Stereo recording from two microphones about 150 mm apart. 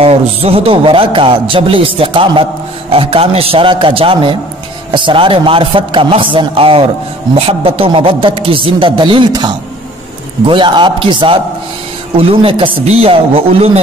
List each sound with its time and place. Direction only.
0.0 s a man's voice: 40° right (ahead or behind)